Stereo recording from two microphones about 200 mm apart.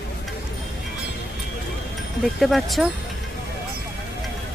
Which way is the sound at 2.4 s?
Centre (ahead or behind).